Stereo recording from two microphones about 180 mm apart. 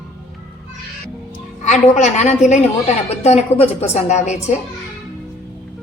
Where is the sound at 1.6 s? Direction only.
40° left (ahead or behind).